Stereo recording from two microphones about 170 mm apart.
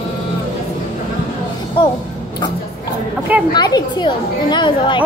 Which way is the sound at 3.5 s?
25° left (ahead or behind).